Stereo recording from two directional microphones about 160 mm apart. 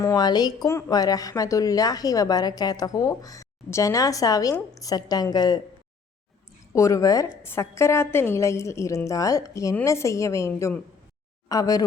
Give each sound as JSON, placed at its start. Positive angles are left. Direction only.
{"t": 0.0, "sound": "a woman's voice", "side_deg": 20}
{"t": 6.7, "sound": "a woman's voice", "side_deg": 20}